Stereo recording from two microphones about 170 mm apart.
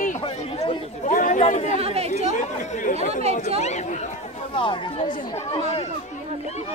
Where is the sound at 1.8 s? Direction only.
35° right (ahead or behind).